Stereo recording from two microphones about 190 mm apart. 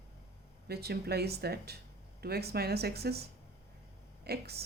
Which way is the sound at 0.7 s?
55° right (ahead or behind).